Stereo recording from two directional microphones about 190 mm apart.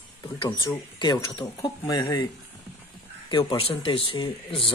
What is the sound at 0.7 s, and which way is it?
A man's voice, 25° left (ahead or behind).